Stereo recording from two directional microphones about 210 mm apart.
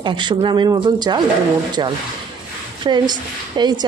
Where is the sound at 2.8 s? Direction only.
20° right (ahead or behind).